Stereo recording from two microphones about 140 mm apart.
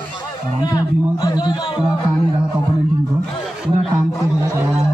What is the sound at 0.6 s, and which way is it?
Speech, 25° left (ahead or behind).